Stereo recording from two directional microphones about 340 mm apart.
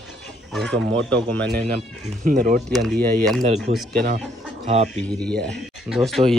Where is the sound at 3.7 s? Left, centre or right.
Centre.